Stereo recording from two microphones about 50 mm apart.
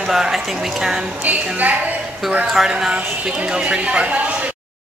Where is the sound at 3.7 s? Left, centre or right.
Right.